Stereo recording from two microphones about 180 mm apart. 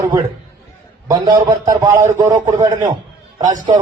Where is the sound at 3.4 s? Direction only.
40° right (ahead or behind).